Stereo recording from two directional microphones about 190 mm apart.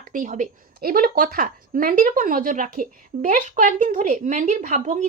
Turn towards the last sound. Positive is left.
turn(degrees=-40)  # may be behind; listen again after turning